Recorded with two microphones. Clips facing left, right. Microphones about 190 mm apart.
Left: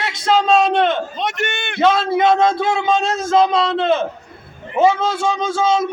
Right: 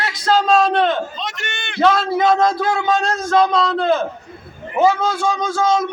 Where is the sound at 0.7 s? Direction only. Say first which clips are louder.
Left 1 dB; 20° left (ahead or behind).